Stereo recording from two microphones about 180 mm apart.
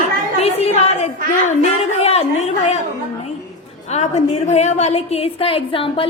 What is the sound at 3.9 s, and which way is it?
A woman's voice, 35° left (ahead or behind).